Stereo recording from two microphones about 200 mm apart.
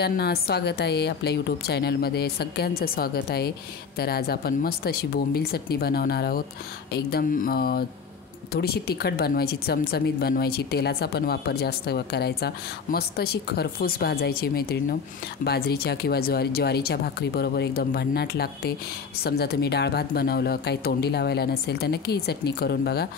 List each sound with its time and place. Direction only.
0.0 s speech: 50° left (ahead or behind)